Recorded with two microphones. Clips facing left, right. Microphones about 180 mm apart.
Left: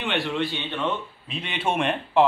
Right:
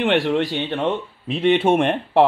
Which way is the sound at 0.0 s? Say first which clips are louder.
Right 8 dB; 90° right.